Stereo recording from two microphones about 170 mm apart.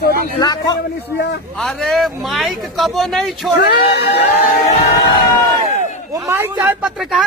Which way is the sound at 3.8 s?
75° left (ahead or behind).